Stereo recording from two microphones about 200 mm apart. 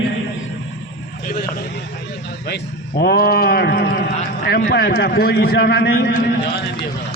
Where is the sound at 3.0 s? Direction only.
50° left (ahead or behind).